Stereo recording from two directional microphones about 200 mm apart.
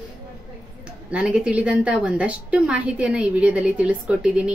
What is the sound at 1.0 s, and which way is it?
Speech, 5° right (ahead or behind).